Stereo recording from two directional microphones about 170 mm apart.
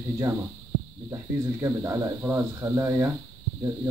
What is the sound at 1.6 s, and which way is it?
Speech, 15° right (ahead or behind).